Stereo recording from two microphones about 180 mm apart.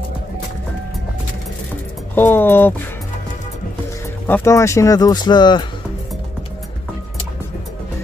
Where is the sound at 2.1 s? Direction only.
10° left (ahead or behind).